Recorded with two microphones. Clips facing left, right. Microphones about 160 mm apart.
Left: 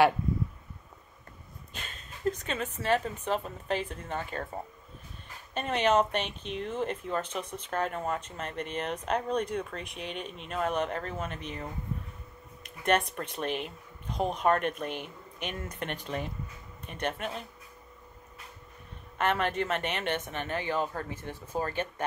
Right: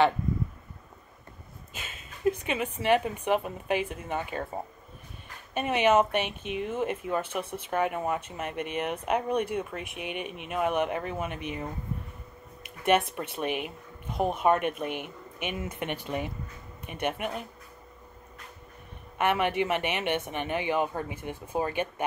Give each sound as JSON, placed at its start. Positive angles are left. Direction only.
{"t": 1.7, "sound": "speech", "side_deg": -5}
{"t": 12.6, "sound": "a sound", "side_deg": -10}
{"t": 13.1, "sound": "speech", "side_deg": -5}
{"t": 14.9, "sound": "speech", "side_deg": -55}
{"t": 15.4, "sound": "speech", "side_deg": -10}
{"t": 19.1, "sound": "speech", "side_deg": -10}